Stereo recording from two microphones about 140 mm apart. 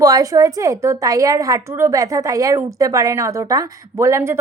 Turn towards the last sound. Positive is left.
turn(degrees=-20)  # may be behind; listen again after turning